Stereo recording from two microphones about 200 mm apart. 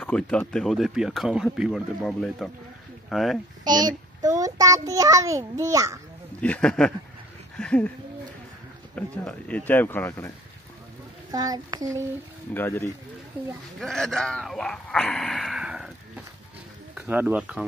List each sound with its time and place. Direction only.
0.0 s speech: 5° left (ahead or behind)
3.6 s a child's voice: 20° right (ahead or behind)
6.4 s speech: 5° left (ahead or behind)
8.9 s speech: 5° left (ahead or behind)
11.3 s a child's voice: 20° right (ahead or behind)
12.5 s speech: 10° left (ahead or behind); by 17.6 s 5° right (ahead or behind)